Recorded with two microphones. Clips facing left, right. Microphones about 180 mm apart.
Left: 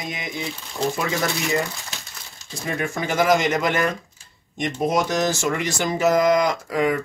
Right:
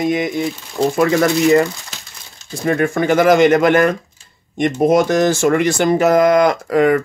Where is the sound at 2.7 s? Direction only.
55° right (ahead or behind).